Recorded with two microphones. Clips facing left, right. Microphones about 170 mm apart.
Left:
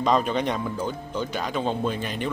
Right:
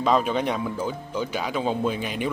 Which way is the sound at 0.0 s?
5° right (ahead or behind).